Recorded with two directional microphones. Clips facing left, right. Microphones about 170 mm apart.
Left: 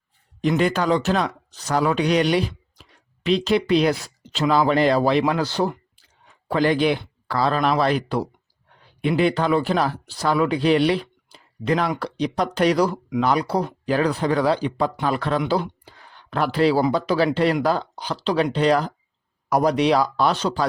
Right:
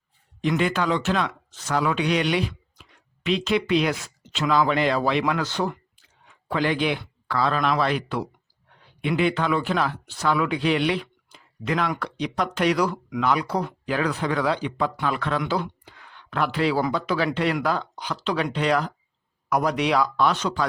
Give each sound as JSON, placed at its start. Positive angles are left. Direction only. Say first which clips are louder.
{"t": 0.4, "sound": "speech", "louder": "left 3 dB", "side_deg": 40}
{"t": 15.8, "sound": "a sound", "louder": "left 1 dB", "side_deg": 35}
{"t": 16.9, "sound": "speech", "louder": "left 4 dB", "side_deg": 35}